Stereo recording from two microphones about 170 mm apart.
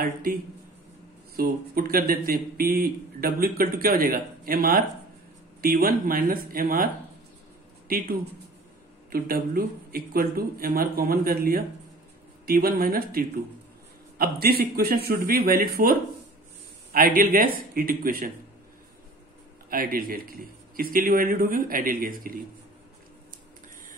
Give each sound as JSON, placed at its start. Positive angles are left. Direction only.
{"t": 0.0, "sound": "a man's voice", "side_deg": -60}
{"t": 9.1, "sound": "a man's voice", "side_deg": -65}
{"t": 19.7, "sound": "a man's voice", "side_deg": -55}